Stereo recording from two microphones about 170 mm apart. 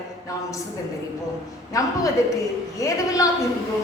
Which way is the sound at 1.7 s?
20° left (ahead or behind).